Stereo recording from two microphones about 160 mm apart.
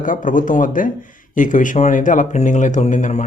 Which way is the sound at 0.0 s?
55° left (ahead or behind).